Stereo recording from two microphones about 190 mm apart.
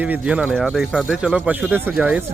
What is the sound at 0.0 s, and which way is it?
Speech, 5° right (ahead or behind).